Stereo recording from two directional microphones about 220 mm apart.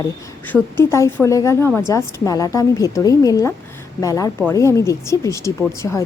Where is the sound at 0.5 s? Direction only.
10° left (ahead or behind).